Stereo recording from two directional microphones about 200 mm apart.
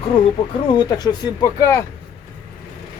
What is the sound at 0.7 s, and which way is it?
Speech, 20° left (ahead or behind).